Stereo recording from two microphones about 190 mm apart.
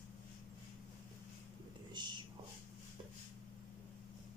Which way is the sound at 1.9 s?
25° right (ahead or behind).